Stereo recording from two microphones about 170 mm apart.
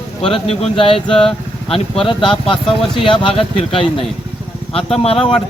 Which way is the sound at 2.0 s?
30° left (ahead or behind).